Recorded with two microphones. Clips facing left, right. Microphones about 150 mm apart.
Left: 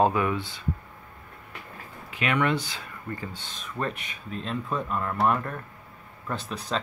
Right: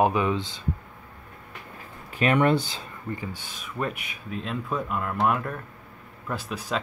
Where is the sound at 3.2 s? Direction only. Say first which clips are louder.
Right 2 dB; 10° right (ahead or behind).